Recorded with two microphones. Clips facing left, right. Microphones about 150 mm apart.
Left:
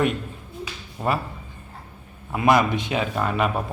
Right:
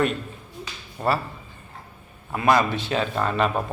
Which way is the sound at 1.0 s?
10° left (ahead or behind).